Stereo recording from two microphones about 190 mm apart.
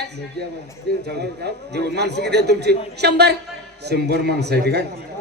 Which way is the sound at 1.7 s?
60° right (ahead or behind).